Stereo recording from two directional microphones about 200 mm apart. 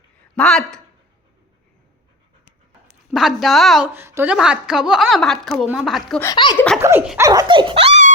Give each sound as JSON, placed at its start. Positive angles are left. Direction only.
{"t": 0.3, "sound": "a woman's voice", "side_deg": 5}
{"t": 3.1, "sound": "a woman's voice", "side_deg": 0}
{"t": 6.2, "sound": "speech", "side_deg": 20}
{"t": 6.8, "sound": "dog", "side_deg": -5}
{"t": 7.2, "sound": "speech", "side_deg": -20}